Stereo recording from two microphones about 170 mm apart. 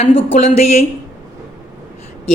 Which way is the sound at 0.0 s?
35° left (ahead or behind).